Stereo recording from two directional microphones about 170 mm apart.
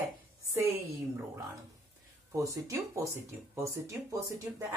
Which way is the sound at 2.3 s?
20° right (ahead or behind).